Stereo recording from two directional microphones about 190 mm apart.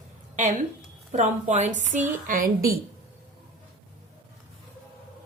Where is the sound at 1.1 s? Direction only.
40° right (ahead or behind).